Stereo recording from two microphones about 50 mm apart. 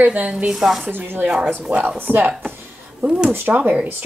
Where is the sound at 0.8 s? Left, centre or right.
Right.